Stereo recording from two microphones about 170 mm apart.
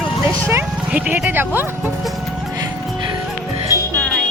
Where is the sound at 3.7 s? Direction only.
10° left (ahead or behind).